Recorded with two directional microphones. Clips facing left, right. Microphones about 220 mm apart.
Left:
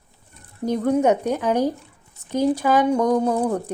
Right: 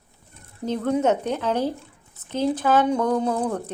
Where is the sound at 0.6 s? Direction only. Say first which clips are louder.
Left 3 dB; 10° left (ahead or behind).